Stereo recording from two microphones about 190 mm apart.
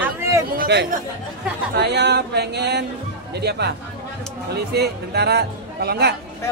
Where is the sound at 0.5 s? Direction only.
60° right (ahead or behind).